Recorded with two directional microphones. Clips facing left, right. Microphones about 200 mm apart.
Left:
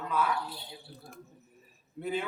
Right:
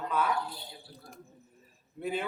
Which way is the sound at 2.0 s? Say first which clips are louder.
Even; 5° right (ahead or behind).